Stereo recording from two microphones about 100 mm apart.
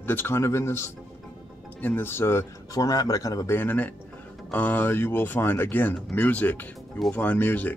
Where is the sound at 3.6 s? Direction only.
20° left (ahead or behind).